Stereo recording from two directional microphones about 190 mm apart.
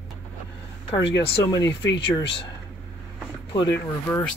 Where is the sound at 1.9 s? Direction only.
25° left (ahead or behind).